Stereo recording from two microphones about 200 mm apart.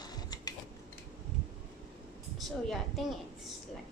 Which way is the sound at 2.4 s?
Centre (ahead or behind).